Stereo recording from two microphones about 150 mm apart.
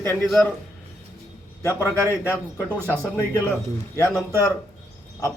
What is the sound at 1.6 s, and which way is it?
Speech, 15° left (ahead or behind).